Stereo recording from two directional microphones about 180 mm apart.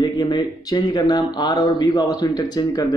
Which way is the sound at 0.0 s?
25° left (ahead or behind).